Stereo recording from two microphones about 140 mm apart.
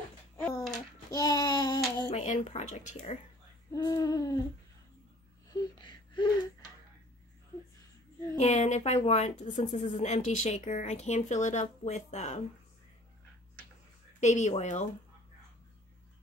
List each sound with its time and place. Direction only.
1.1 s child singing: 30° left (ahead or behind)
2.1 s speech: 60° left (ahead or behind)
3.7 s hoot: 30° left (ahead or behind)
5.5 s a sound: 30° left (ahead or behind)
8.4 s speech: 55° left (ahead or behind)
14.2 s speech: 55° left (ahead or behind)